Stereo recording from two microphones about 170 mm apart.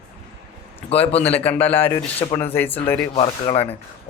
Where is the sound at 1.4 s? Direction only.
10° left (ahead or behind).